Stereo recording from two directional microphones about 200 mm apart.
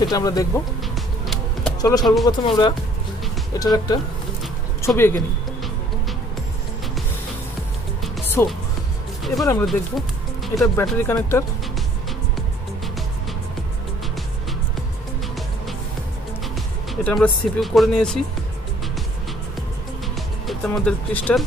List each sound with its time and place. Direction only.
0.1 s speech: 20° left (ahead or behind)
0.9 s music: centre (ahead or behind)
1.8 s speech: 20° left (ahead or behind)
8.4 s speech: 10° left (ahead or behind)
9.7 s speech: centre (ahead or behind)
10.8 s speech: 10° left (ahead or behind)
16.9 s speech: 5° left (ahead or behind)
20.4 s speech: centre (ahead or behind)